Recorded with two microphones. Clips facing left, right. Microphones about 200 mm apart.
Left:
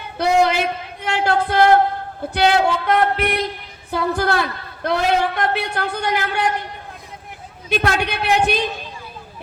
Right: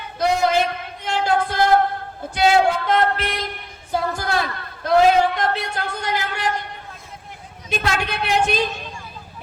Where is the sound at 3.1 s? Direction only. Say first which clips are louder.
Left 6 dB; 60° left (ahead or behind).